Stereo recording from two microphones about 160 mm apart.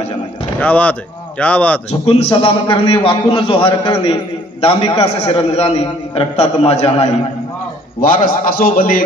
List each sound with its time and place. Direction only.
0.6 s speech: 10° left (ahead or behind)
1.9 s a man's voice: 40° left (ahead or behind)
8.0 s a man's voice: 60° left (ahead or behind)